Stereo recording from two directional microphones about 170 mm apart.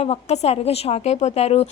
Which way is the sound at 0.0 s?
40° left (ahead or behind).